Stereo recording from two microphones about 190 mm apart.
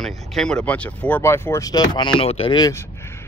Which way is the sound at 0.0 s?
Centre (ahead or behind).